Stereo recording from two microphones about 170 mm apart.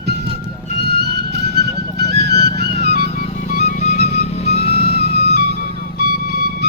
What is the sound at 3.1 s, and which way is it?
Music, 45° left (ahead or behind).